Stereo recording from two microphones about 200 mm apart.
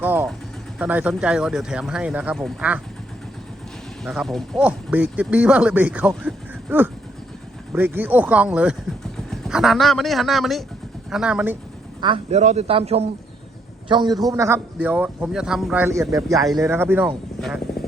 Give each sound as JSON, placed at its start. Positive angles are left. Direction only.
{"t": 0.0, "sound": "vehicle", "side_deg": -10}
{"t": 0.8, "sound": "speech", "side_deg": -5}
{"t": 4.0, "sound": "speech", "side_deg": 0}
{"t": 11.9, "sound": "a man's voice", "side_deg": -25}
{"t": 17.4, "sound": "a sound", "side_deg": 5}